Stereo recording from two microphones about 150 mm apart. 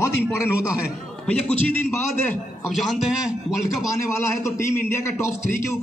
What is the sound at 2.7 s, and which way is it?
Speech, centre (ahead or behind).